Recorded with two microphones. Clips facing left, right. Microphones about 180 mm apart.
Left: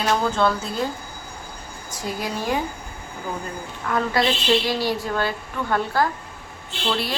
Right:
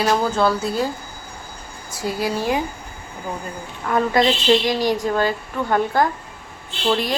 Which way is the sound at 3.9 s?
20° right (ahead or behind).